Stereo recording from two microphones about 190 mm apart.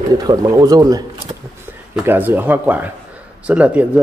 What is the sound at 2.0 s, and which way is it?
Speech, 10° right (ahead or behind).